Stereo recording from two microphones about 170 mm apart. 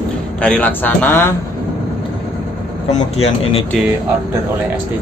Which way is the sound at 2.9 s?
35° left (ahead or behind).